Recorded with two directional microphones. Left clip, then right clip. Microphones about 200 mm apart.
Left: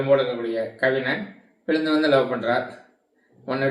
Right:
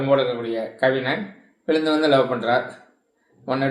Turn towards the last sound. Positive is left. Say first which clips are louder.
# right 2 dB
turn(degrees=-20)  # may be behind; listen again after turning